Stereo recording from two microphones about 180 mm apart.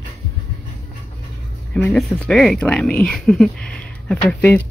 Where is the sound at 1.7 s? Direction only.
5° left (ahead or behind).